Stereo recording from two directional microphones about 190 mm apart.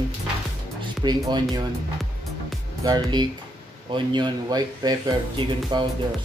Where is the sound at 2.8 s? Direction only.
20° right (ahead or behind).